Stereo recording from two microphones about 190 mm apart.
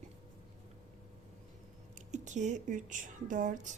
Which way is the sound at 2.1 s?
40° right (ahead or behind).